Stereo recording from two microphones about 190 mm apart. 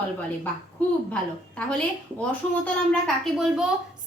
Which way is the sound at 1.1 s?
5° left (ahead or behind).